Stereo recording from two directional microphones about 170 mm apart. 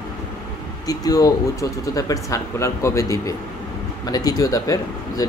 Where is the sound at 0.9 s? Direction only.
20° left (ahead or behind).